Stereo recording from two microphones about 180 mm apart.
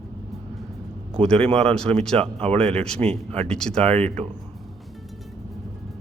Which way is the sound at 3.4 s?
5° left (ahead or behind).